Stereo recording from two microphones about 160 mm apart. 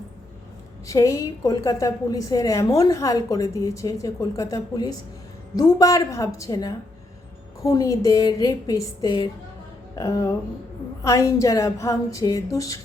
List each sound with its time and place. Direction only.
0.9 s a woman's voice: 20° left (ahead or behind)